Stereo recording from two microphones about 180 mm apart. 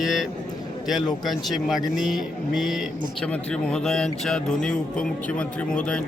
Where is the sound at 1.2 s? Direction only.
Centre (ahead or behind).